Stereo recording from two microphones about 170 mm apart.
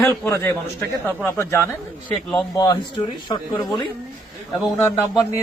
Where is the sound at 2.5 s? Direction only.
25° left (ahead or behind).